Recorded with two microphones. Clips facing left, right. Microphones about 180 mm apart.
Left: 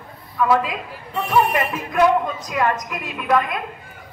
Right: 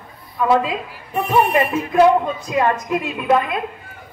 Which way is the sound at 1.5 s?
30° right (ahead or behind).